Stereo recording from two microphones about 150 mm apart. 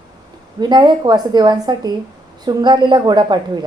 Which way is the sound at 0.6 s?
30° right (ahead or behind).